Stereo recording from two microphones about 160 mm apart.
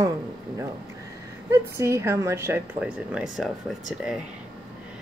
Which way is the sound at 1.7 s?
15° right (ahead or behind).